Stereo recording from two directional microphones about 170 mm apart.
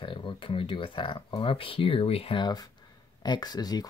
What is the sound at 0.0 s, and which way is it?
Speech, 30° left (ahead or behind).